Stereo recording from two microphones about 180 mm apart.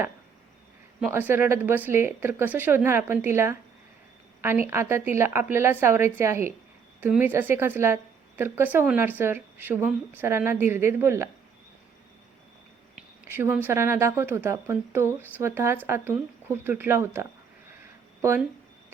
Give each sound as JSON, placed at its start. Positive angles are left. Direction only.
{"t": 1.1, "sound": "a woman's voice", "side_deg": -15}
{"t": 13.0, "sound": "a woman's voice", "side_deg": -10}